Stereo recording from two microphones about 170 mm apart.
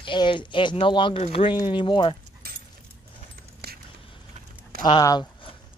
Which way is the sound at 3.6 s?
70° right (ahead or behind).